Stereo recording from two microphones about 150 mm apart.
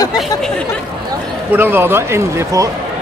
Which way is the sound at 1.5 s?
15° right (ahead or behind).